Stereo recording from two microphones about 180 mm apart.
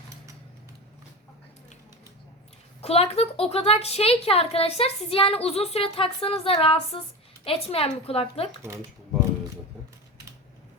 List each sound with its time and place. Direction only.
2.8 s a woman's voice: 35° left (ahead or behind)